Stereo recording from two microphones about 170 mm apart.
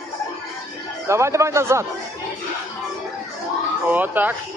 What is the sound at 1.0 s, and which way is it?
Speech, 15° right (ahead or behind).